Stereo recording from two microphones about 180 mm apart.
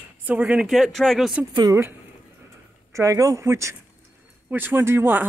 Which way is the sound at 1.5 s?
20° right (ahead or behind).